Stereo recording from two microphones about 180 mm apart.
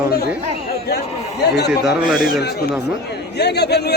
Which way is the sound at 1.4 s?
65° left (ahead or behind).